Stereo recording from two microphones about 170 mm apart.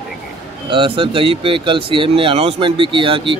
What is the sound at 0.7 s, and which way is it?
Speech, 30° right (ahead or behind).